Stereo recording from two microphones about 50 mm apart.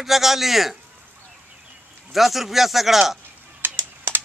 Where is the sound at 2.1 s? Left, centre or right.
Centre.